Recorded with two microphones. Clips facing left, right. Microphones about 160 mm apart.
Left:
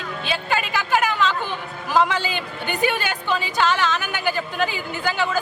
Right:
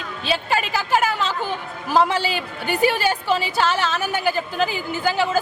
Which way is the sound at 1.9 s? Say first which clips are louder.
Right 1 dB; 30° right (ahead or behind).